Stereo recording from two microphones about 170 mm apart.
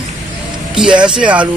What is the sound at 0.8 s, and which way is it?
Speech, 5° right (ahead or behind).